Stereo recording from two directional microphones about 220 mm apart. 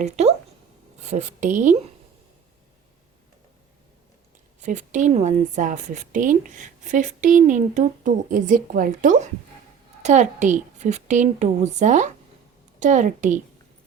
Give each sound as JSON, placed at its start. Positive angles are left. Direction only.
{"t": 0.0, "sound": "a woman's voice", "side_deg": -30}
{"t": 4.6, "sound": "a woman's voice", "side_deg": -30}